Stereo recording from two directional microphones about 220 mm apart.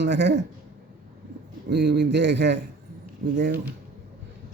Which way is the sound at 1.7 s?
50° right (ahead or behind).